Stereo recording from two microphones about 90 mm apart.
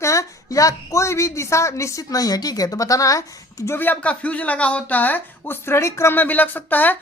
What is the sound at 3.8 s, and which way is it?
Speech, 15° left (ahead or behind).